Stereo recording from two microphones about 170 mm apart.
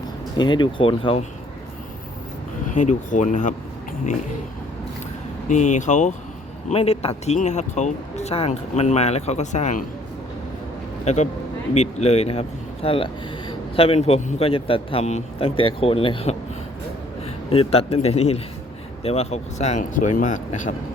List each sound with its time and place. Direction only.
0.3 s speech: 25° left (ahead or behind)
2.7 s speech: 45° left (ahead or behind)
5.5 s speech: 45° left (ahead or behind)
11.0 s speech: 40° left (ahead or behind)
17.5 s speech: 35° left (ahead or behind)